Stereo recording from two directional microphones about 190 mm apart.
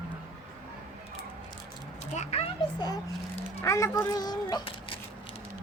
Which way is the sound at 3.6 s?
15° left (ahead or behind).